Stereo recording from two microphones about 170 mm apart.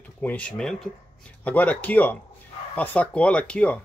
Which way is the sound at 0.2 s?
10° left (ahead or behind).